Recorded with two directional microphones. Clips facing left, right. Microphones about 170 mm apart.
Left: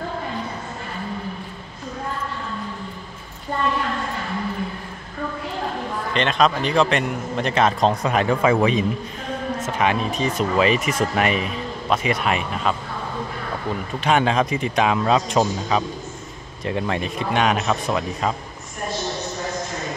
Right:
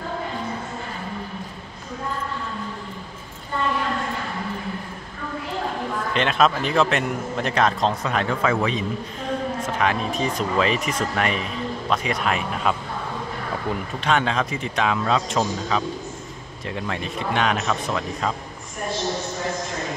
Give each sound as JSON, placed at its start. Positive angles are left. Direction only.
{"t": 6.1, "sound": "a man's voice", "side_deg": -5}
{"t": 7.8, "sound": "a man's voice", "side_deg": 15}
{"t": 9.8, "sound": "a man's voice", "side_deg": 0}
{"t": 14.0, "sound": "a man's voice", "side_deg": 15}
{"t": 17.4, "sound": "a man's voice", "side_deg": 15}